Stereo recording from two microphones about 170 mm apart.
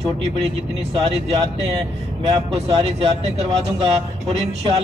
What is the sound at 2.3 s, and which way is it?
A man's voice, 30° right (ahead or behind).